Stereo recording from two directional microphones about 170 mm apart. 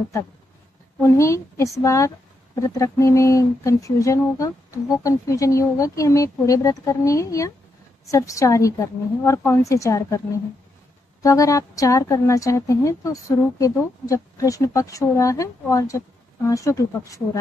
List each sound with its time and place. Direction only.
1.0 s a woman's voice: 15° left (ahead or behind)
11.2 s speech: 20° left (ahead or behind)